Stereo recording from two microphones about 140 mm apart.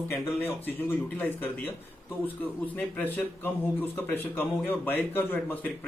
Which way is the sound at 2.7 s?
10° left (ahead or behind).